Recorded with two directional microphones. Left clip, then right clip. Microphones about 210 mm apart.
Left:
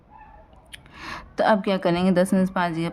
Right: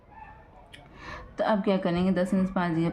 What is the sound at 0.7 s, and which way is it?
Speech, 40° left (ahead or behind).